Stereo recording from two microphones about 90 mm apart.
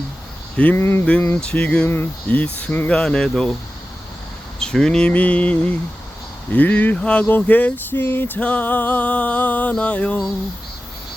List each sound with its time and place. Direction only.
0.5 s speech: 15° left (ahead or behind)
0.8 s speech: 30° left (ahead or behind)
1.4 s speech: 15° left (ahead or behind)
2.9 s speech: 10° left (ahead or behind)
4.6 s speech: 5° left (ahead or behind)